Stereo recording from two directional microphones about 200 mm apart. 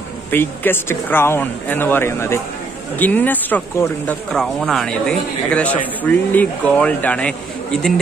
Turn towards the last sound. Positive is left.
turn(degrees=5)  # may be behind; listen again after turning